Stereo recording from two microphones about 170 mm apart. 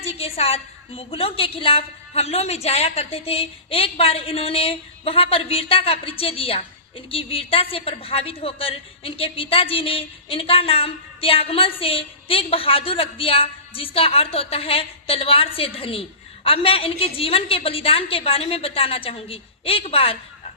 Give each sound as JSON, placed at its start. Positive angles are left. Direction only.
{"t": 0.0, "sound": "a woman's voice", "side_deg": 35}